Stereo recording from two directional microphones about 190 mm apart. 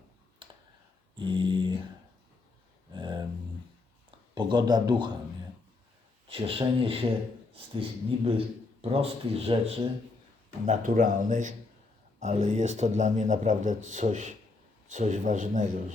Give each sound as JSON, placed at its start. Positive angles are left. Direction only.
{"t": 0.4, "sound": "computer keyboard", "side_deg": -25}
{"t": 1.1, "sound": "a sound", "side_deg": -25}
{"t": 2.9, "sound": "a sound", "side_deg": -25}
{"t": 4.4, "sound": "speech", "side_deg": -25}
{"t": 6.2, "sound": "speech", "side_deg": -30}
{"t": 10.7, "sound": "a man's voice", "side_deg": -45}